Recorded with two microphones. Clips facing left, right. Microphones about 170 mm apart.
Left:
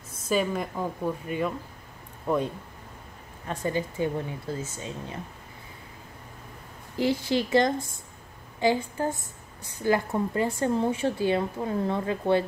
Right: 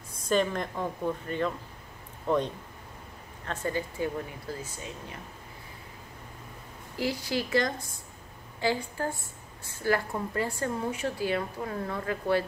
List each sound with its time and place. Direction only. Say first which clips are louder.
0.3 s a woman's voice: left 1 dB; 5° left (ahead or behind)
3.4 s a woman's voice: left 3 dB; 20° left (ahead or behind)
7.0 s a woman's voice: left 5 dB; 25° left (ahead or behind)